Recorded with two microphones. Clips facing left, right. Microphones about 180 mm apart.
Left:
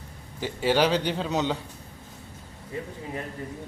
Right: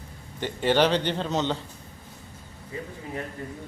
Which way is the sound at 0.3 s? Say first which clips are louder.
Right 1 dB; 5° left (ahead or behind).